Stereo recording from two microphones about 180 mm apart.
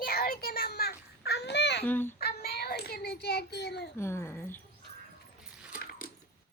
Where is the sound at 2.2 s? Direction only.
60° left (ahead or behind).